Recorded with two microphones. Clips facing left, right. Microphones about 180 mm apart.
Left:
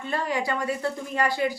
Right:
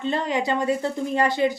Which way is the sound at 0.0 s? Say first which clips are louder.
Right 3 dB; 20° right (ahead or behind).